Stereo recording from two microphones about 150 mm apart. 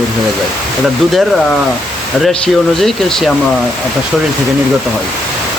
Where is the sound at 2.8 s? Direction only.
Centre (ahead or behind).